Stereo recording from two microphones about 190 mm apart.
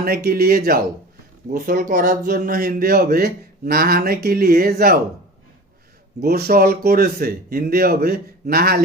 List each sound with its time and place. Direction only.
0.0 s speech: 55° right (ahead or behind)
6.1 s speech: 55° right (ahead or behind)